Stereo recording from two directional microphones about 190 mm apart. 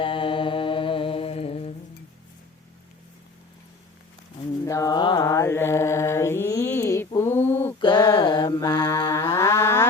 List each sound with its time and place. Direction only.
0.0 s mantra: 25° left (ahead or behind)
4.6 s mantra: 15° left (ahead or behind)
7.8 s mantra: 25° left (ahead or behind)